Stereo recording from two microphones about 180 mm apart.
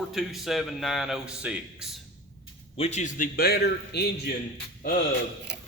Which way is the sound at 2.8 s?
40° left (ahead or behind).